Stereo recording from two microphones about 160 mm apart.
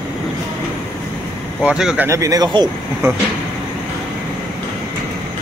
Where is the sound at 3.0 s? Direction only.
15° right (ahead or behind).